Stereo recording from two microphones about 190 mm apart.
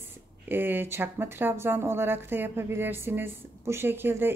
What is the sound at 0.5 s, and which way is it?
Speech, 10° right (ahead or behind).